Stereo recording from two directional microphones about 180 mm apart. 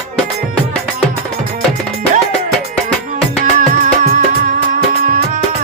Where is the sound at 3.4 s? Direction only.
45° right (ahead or behind).